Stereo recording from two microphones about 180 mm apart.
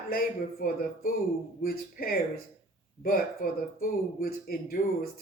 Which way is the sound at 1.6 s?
55° left (ahead or behind).